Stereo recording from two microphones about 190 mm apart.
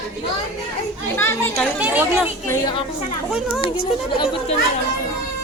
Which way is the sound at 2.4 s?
15° left (ahead or behind).